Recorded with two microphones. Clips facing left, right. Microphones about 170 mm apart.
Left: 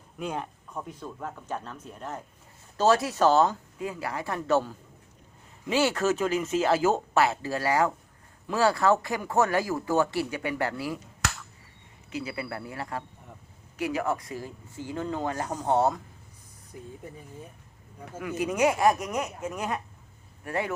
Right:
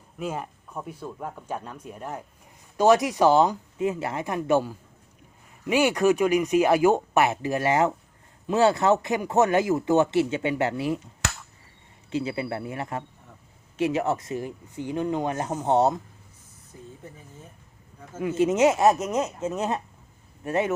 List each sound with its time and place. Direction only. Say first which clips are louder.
0.2 s speech: right 2 dB; 5° right (ahead or behind); by 11.0 s 20° right (ahead or behind)
12.1 s speech: right 6 dB; 25° right (ahead or behind)
16.7 s speech: left 2 dB; 15° left (ahead or behind)
18.2 s speech: right 5 dB; 25° right (ahead or behind)